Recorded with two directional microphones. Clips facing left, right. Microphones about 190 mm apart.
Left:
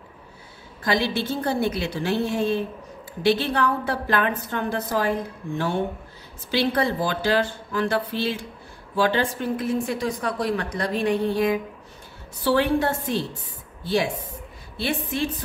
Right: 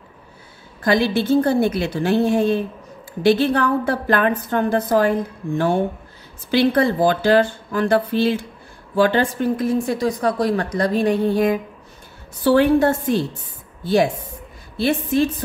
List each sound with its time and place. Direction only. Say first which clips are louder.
0.8 s a woman's voice: right 6 dB; 50° right (ahead or behind)
6.5 s a woman's voice: right 6 dB; 50° right (ahead or behind)
14.8 s a woman's voice: right 8 dB; 40° right (ahead or behind)